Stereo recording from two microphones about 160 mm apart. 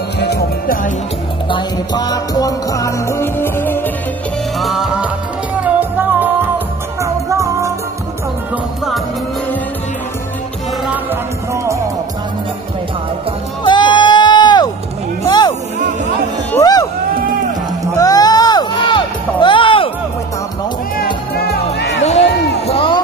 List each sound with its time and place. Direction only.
0.2 s music: 85° left
1.5 s music: 25° left (ahead or behind)
4.6 s music: centre (ahead or behind); by 7.7 s 20° right (ahead or behind)
11.5 s music: 20° right (ahead or behind)
13.7 s music: 30° left (ahead or behind)
15.2 s a sound: 25° left (ahead or behind)
16.5 s music: 25° left (ahead or behind)
17.9 s a sound: 25° left (ahead or behind)
21.0 s music: 70° left (ahead or behind)
21.7 s music: 90° left
22.7 s a sound: 35° left (ahead or behind)